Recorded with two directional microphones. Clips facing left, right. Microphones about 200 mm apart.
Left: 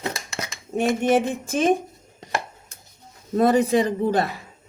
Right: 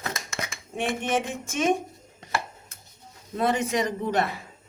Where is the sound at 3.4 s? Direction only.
40° left (ahead or behind).